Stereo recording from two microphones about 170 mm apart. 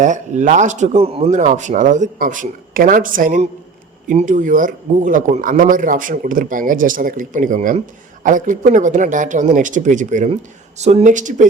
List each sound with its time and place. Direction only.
0.0 s speech: 45° right (ahead or behind)